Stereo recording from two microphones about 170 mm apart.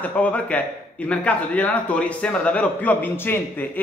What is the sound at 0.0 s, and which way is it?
A man's voice, 10° left (ahead or behind).